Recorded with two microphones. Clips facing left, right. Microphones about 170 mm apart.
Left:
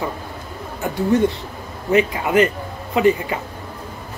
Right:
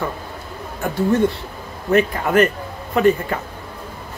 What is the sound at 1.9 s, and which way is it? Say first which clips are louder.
Speech: even; 15° left (ahead or behind).